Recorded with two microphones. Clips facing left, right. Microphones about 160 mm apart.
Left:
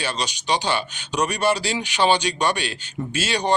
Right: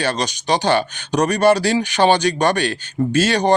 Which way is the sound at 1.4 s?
55° right (ahead or behind).